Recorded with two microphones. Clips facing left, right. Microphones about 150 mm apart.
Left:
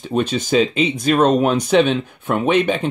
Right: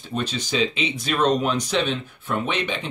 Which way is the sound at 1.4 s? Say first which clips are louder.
Left 8 dB; 55° left (ahead or behind).